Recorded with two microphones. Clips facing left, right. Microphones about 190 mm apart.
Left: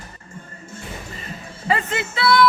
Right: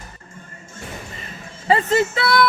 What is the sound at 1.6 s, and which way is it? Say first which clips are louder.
Speech: right 6 dB; 35° right (ahead or behind).